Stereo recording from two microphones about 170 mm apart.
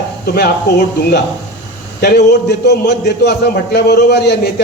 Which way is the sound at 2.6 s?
80° left.